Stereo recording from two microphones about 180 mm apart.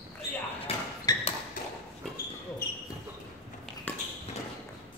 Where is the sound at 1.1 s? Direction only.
20° left (ahead or behind).